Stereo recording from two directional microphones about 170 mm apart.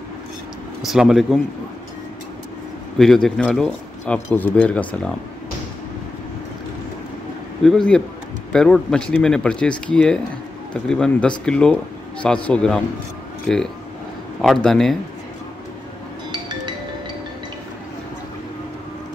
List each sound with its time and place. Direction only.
0.8 s speech: centre (ahead or behind)
3.0 s speech: centre (ahead or behind)
7.6 s speech: 5° left (ahead or behind)
16.3 s music: 25° right (ahead or behind)